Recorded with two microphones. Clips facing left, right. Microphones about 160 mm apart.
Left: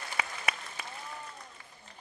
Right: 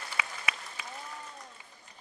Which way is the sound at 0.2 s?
45° left (ahead or behind).